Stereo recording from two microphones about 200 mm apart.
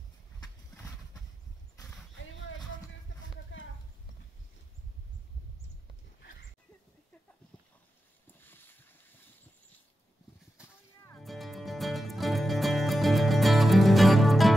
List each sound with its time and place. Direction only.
3.5 s clip-clop: 70° left (ahead or behind)
8.4 s a sound: 10° left (ahead or behind)
11.1 s music: centre (ahead or behind)